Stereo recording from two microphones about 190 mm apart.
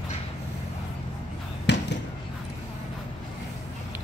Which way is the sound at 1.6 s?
65° left (ahead or behind).